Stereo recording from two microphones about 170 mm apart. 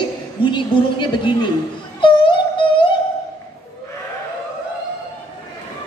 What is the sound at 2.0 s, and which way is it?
Music, 30° left (ahead or behind).